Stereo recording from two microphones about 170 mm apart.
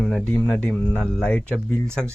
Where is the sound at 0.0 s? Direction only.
5° left (ahead or behind).